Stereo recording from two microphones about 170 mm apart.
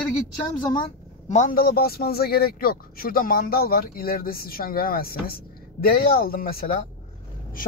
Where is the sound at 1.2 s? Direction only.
45° left (ahead or behind).